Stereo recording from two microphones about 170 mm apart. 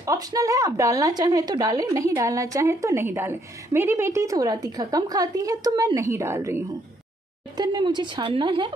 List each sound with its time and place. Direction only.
0.0 s speech: 20° right (ahead or behind)